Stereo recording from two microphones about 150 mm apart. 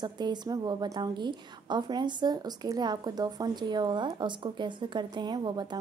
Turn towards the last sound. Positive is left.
turn(degrees=-30)  # may be behind; listen again after turning